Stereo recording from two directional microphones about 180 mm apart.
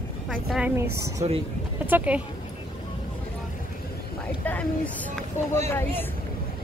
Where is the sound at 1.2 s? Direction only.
35° right (ahead or behind).